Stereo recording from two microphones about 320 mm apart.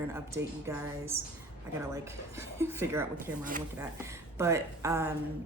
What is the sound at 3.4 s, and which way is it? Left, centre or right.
Speech, right.